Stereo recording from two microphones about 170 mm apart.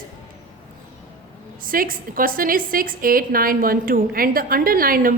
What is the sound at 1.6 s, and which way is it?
Speech, 55° right (ahead or behind).